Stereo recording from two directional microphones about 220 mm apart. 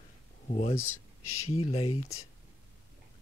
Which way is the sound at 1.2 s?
75° left (ahead or behind).